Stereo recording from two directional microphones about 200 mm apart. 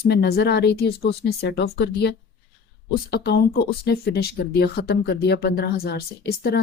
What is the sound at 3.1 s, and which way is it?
Speech, 55° left (ahead or behind).